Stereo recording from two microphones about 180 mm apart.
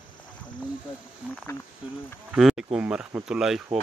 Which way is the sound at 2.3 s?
Centre (ahead or behind).